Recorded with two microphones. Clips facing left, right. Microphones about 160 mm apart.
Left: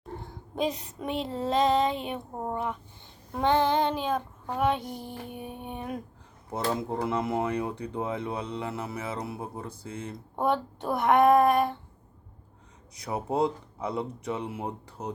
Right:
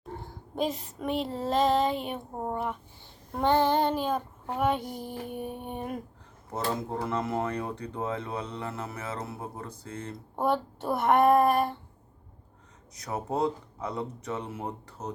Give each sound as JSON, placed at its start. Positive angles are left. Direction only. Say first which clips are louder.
{"t": 0.2, "sound": "child singing", "louder": "left 1 dB", "side_deg": 0}
{"t": 7.0, "sound": "speech", "louder": "left 2 dB", "side_deg": 10}
{"t": 10.3, "sound": "child singing", "louder": "even", "side_deg": -5}
{"t": 13.1, "sound": "speech", "louder": "left 2 dB", "side_deg": 15}